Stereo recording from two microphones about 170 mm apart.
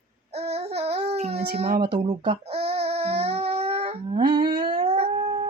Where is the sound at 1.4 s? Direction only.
65° right (ahead or behind).